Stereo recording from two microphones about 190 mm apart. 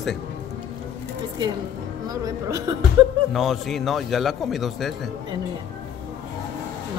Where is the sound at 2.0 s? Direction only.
20° right (ahead or behind).